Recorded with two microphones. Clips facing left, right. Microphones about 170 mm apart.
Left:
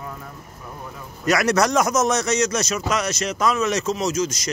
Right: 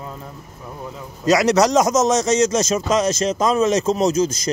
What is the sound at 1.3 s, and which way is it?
A man's voice, 20° right (ahead or behind).